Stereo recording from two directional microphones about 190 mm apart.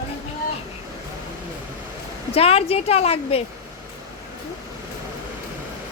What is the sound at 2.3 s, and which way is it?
A woman's voice, 30° left (ahead or behind).